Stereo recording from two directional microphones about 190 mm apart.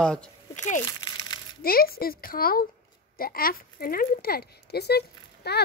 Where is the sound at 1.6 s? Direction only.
50° left (ahead or behind).